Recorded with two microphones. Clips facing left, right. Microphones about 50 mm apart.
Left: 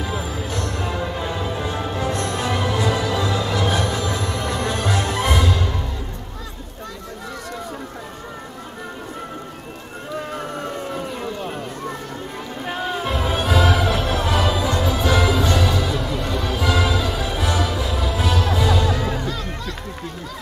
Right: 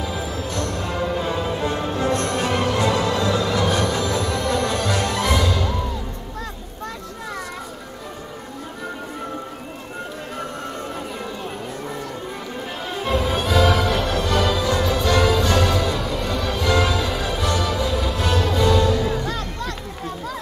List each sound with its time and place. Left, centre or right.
0.2 s music: centre
2.1 s music: right
3.1 s music: left
13.2 s music: centre
19.2 s music: right